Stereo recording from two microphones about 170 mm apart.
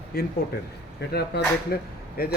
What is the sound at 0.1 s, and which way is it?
Speech, 65° left (ahead or behind).